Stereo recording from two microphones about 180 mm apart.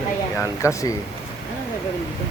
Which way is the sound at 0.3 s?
15° left (ahead or behind).